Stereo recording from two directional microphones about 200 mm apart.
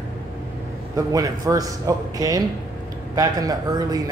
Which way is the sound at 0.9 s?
15° right (ahead or behind).